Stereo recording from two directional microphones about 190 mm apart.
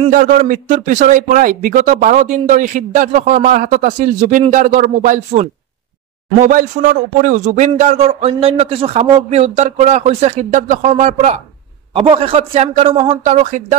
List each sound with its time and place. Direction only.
0.1 s a man's voice: 45° right (ahead or behind)